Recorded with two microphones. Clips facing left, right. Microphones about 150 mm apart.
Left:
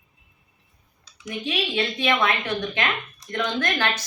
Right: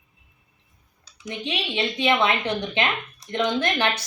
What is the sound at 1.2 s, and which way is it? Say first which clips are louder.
Speech: left 2 dB; 20° right (ahead or behind).